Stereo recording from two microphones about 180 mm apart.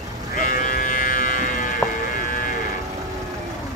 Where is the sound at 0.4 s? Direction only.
50° left (ahead or behind).